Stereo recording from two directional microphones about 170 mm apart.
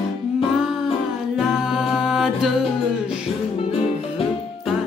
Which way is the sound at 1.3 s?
5° right (ahead or behind).